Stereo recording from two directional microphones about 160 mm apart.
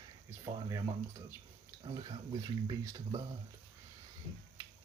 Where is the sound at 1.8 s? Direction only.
30° right (ahead or behind).